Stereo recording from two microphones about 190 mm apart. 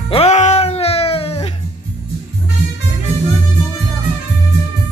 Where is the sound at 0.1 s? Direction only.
35° left (ahead or behind).